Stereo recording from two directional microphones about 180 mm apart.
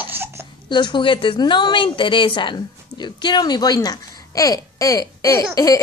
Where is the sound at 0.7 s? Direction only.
25° left (ahead or behind).